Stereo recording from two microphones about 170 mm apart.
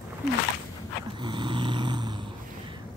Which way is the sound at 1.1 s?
25° right (ahead or behind).